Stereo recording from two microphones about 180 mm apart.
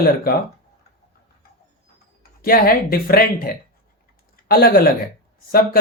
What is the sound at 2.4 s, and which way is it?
Speech, 55° left (ahead or behind).